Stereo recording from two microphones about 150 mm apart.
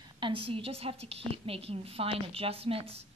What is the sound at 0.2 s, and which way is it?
A woman's voice, 35° right (ahead or behind).